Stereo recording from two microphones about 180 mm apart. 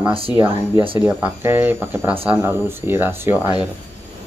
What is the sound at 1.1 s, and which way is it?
Speech, 10° right (ahead or behind).